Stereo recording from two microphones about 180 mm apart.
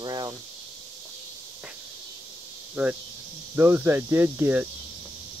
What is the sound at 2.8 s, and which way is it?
Speech, 10° right (ahead or behind).